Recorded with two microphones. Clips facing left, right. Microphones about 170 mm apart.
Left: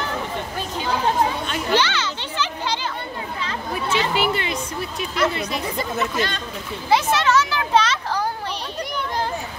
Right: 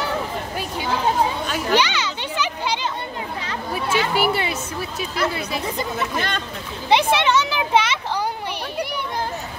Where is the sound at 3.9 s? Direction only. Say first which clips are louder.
Right 1 dB; 10° right (ahead or behind).